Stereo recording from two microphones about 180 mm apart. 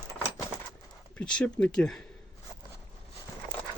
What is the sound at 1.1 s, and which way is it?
Speech, 5° left (ahead or behind).